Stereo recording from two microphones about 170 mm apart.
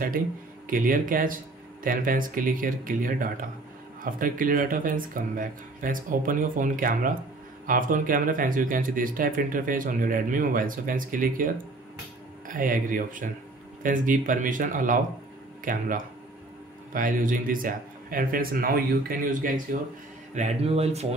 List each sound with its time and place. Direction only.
0.7 s a man's voice: 55° right (ahead or behind)
20.3 s speech: 40° right (ahead or behind)